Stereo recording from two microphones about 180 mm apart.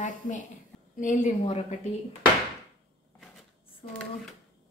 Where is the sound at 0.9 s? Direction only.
45° left (ahead or behind).